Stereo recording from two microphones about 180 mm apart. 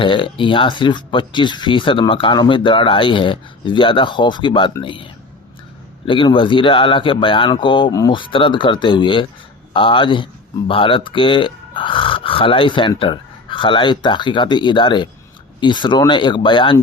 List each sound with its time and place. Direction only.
0.0 s speech: 30° left (ahead or behind)
6.1 s speech: 25° left (ahead or behind)